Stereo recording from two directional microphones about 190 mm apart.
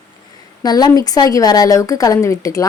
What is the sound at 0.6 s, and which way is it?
Speech, 20° left (ahead or behind).